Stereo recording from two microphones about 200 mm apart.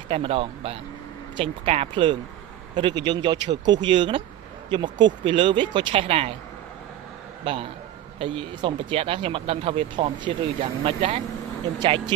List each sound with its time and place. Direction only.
0.1 s speech: 30° right (ahead or behind)
8.2 s speech: 25° right (ahead or behind)